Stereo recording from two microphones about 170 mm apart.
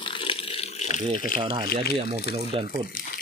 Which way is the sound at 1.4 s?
30° right (ahead or behind).